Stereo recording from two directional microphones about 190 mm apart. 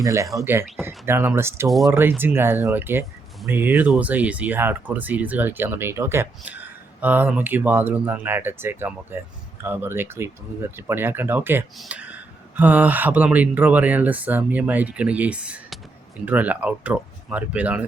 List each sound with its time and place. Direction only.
0.0 s speech: 15° right (ahead or behind)
1.6 s speech: centre (ahead or behind)
1.9 s speech: 10° right (ahead or behind)